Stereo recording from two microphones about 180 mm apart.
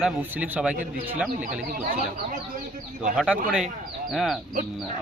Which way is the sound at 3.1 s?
Centre (ahead or behind).